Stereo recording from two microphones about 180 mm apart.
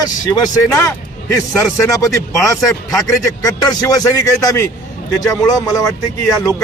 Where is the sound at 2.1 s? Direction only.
15° left (ahead or behind).